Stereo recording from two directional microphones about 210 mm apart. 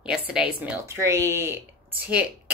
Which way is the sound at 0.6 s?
10° right (ahead or behind).